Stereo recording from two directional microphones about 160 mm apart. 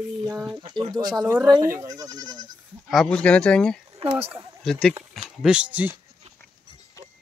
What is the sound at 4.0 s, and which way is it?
Speech, 35° right (ahead or behind).